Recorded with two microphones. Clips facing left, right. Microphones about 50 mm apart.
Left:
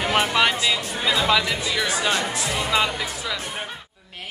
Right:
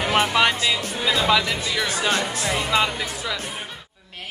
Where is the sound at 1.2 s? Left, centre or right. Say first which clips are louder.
Right 1 dB; centre.